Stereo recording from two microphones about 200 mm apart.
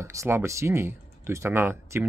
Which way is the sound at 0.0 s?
15° right (ahead or behind).